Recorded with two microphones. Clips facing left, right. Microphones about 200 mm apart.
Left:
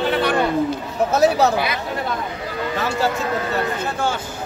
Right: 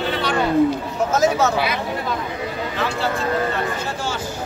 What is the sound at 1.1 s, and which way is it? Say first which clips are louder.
Speech: left 2 dB; 35° left (ahead or behind).